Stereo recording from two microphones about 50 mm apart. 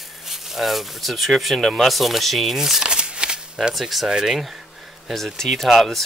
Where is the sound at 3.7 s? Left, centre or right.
Centre.